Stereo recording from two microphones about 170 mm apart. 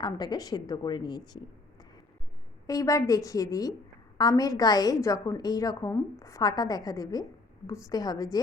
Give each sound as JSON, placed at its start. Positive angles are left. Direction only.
{"t": 0.0, "sound": "a woman's voice", "side_deg": 25}